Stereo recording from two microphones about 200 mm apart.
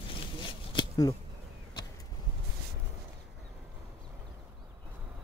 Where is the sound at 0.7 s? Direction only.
20° left (ahead or behind).